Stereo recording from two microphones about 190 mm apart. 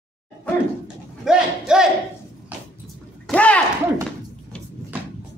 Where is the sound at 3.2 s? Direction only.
5° left (ahead or behind).